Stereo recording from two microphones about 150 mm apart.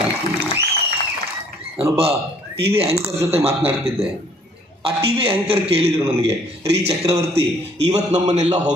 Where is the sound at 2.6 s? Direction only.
40° right (ahead or behind).